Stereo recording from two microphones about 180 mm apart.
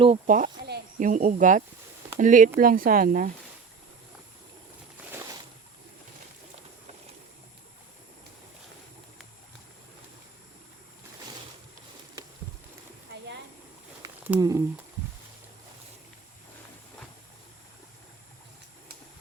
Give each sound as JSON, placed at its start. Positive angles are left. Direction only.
{"t": 0.3, "sound": "cricket", "side_deg": -50}
{"t": 0.9, "sound": "speech", "side_deg": -45}
{"t": 5.1, "sound": "a sound", "side_deg": -20}
{"t": 14.3, "sound": "speech", "side_deg": -20}